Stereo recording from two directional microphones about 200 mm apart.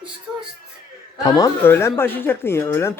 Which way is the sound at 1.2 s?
20° left (ahead or behind).